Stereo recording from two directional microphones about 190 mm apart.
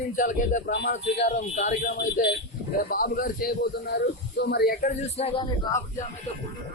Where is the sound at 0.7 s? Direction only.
70° left (ahead or behind).